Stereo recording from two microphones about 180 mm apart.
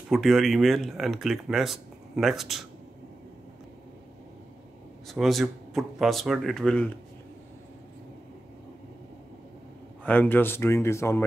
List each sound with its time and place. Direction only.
0.1 s speech: centre (ahead or behind)
5.0 s speech: centre (ahead or behind)
10.0 s speech: 10° left (ahead or behind)